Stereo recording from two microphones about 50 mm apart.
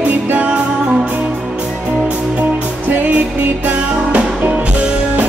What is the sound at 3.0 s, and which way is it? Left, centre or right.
Music, right.